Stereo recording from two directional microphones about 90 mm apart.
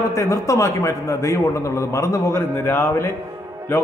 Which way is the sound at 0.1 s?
35° left (ahead or behind).